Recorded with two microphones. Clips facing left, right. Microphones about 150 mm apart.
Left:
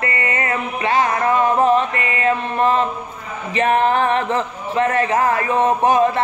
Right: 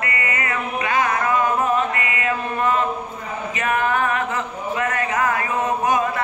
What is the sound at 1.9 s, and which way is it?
Mantra, 30° left (ahead or behind).